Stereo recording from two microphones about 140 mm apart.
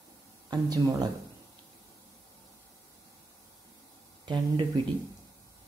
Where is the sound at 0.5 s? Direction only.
30° right (ahead or behind).